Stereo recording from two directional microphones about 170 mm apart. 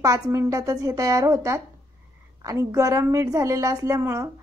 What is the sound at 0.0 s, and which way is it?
A woman's voice, 15° right (ahead or behind).